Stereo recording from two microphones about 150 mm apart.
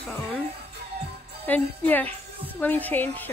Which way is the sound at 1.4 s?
10° left (ahead or behind).